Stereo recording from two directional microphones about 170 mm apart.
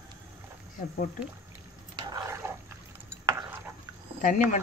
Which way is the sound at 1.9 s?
25° right (ahead or behind).